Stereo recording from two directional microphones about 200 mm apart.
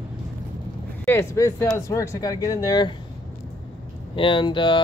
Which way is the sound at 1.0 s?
10° left (ahead or behind).